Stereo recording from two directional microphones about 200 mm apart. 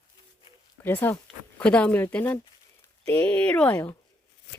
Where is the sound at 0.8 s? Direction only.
10° left (ahead or behind).